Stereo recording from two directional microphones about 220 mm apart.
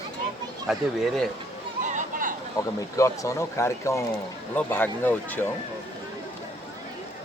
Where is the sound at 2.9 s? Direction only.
15° left (ahead or behind).